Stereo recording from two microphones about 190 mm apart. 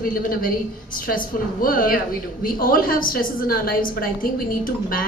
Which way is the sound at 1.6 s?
50° left (ahead or behind).